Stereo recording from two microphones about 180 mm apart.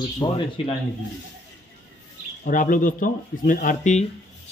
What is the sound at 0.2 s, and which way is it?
Speech, 25° left (ahead or behind).